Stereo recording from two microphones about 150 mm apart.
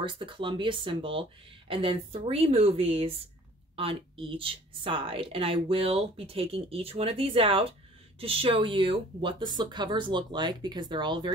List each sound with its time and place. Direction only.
0.0 s a woman's voice: 35° right (ahead or behind)